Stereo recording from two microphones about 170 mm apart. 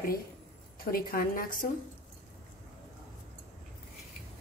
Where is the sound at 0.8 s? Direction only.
60° left (ahead or behind).